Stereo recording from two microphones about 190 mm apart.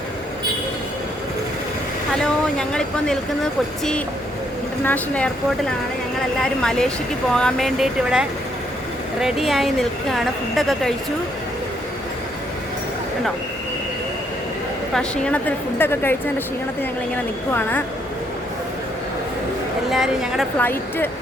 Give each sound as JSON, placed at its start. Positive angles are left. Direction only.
{"t": 2.2, "sound": "a woman's voice", "side_deg": 5}
{"t": 6.4, "sound": "speech", "side_deg": 5}
{"t": 14.9, "sound": "a woman's voice", "side_deg": 5}
{"t": 17.5, "sound": "a woman's voice", "side_deg": 10}
{"t": 19.9, "sound": "speech", "side_deg": 0}
{"t": 20.6, "sound": "a woman's voice", "side_deg": 10}